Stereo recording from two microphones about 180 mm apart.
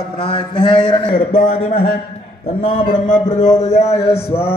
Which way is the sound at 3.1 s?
40° left (ahead or behind).